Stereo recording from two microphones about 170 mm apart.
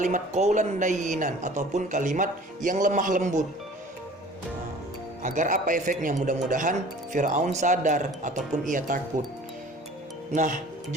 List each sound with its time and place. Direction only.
0.0 s speech: 45° right (ahead or behind)
5.2 s speech: 50° right (ahead or behind)